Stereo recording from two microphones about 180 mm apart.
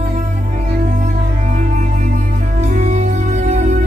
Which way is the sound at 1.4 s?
45° right (ahead or behind).